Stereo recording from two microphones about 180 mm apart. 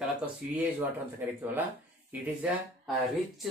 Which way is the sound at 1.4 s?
10° right (ahead or behind).